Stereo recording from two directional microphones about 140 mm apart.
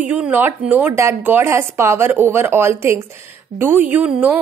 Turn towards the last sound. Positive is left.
turn(degrees=-10)  # may be behind; listen again after turning